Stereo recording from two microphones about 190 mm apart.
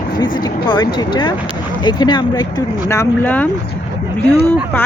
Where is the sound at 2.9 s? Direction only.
10° left (ahead or behind).